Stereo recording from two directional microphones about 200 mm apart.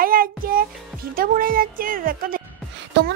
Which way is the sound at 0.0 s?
45° right (ahead or behind).